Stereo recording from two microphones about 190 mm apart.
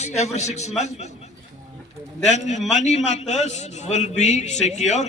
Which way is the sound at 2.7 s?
40° left (ahead or behind).